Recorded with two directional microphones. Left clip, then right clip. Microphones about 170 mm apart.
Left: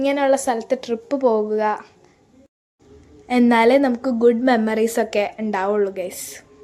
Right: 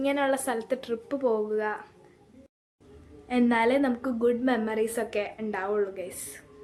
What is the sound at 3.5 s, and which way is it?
A woman's voice, 40° left (ahead or behind).